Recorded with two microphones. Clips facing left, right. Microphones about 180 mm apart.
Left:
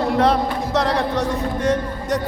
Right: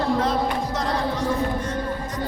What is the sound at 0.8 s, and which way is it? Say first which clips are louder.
Music: left 5 dB; 75° left (ahead or behind).